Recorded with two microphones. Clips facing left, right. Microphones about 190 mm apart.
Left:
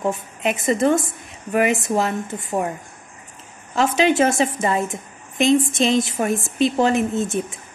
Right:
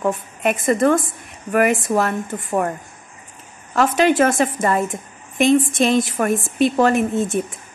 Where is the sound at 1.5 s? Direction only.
50° right (ahead or behind).